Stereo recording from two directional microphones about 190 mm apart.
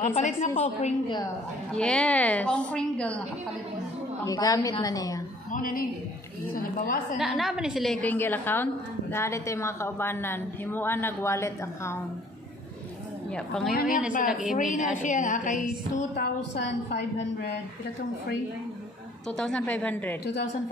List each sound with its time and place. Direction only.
0.0 s a woman's voice: 40° left (ahead or behind)
1.7 s a woman's voice: 5° left (ahead or behind)
4.3 s a woman's voice: 20° left (ahead or behind)
5.5 s a woman's voice: 50° left (ahead or behind)
7.2 s a woman's voice: centre (ahead or behind); by 12.0 s 15° left (ahead or behind)
13.3 s a woman's voice: centre (ahead or behind)
13.7 s a woman's voice: 45° left (ahead or behind)
16.2 s a woman's voice: 65° left (ahead or behind)
19.2 s a woman's voice: 5° left (ahead or behind)